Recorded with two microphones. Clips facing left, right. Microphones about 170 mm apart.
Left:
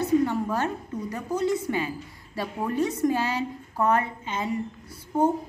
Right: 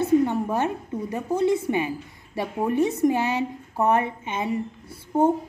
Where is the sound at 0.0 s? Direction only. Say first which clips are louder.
Right 2 dB; 20° right (ahead or behind).